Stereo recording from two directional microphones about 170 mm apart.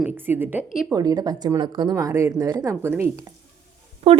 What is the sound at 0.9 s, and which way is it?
A woman's voice, 20° right (ahead or behind).